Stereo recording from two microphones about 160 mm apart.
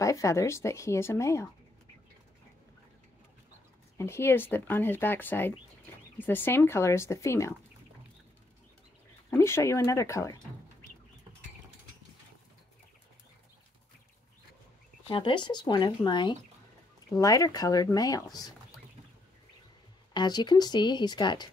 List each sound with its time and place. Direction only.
0.0 s speech: 20° left (ahead or behind)
4.0 s speech: 15° left (ahead or behind)
9.4 s speech: 15° left (ahead or behind)
15.0 s speech: 30° left (ahead or behind)
20.2 s speech: 25° left (ahead or behind)